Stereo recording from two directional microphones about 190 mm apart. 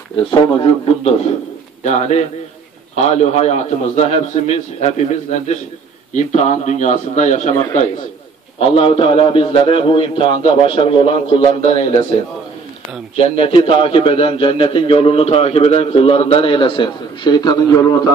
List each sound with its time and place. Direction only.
0.1 s a man's voice: 25° left (ahead or behind)
13.2 s a man's voice: 30° left (ahead or behind)